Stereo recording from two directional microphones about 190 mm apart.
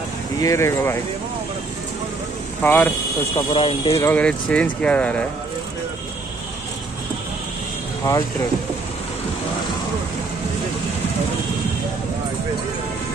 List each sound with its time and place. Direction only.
0.4 s speech: 15° left (ahead or behind)
2.6 s speech: 10° left (ahead or behind)
3.5 s speech: 30° left (ahead or behind)
4.0 s speech: 5° left (ahead or behind)